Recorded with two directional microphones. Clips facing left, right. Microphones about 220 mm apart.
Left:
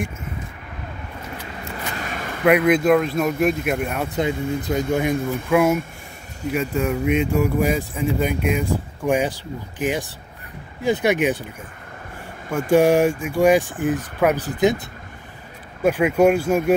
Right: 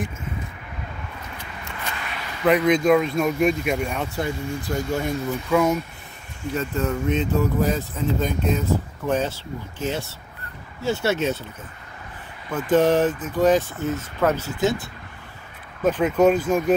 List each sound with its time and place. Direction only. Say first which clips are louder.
1.6 s vehicle: left 3 dB; 45° left (ahead or behind)
2.4 s speech: left 2 dB; 10° left (ahead or behind)
4.1 s speech: left 4 dB; 20° left (ahead or behind)
15.8 s speech: left 2 dB; 10° left (ahead or behind)